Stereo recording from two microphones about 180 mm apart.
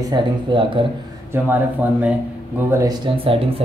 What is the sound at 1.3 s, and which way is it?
Speech, 10° right (ahead or behind).